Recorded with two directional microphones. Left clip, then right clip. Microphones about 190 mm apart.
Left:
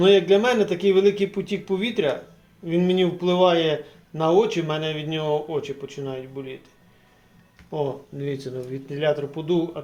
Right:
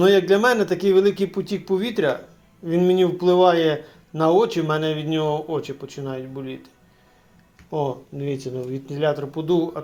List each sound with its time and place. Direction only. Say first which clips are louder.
0.0 s speech: right 1 dB; 30° right (ahead or behind)
8.2 s speech: right 2 dB; 15° right (ahead or behind); by 9.6 s 40° right (ahead or behind)